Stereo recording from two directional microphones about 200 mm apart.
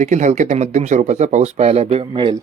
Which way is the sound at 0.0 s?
35° right (ahead or behind).